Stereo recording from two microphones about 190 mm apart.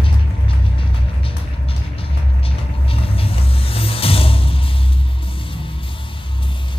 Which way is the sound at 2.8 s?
30° left (ahead or behind).